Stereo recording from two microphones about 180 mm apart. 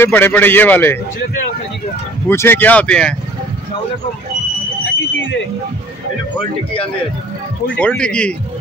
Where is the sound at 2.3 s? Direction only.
10° left (ahead or behind).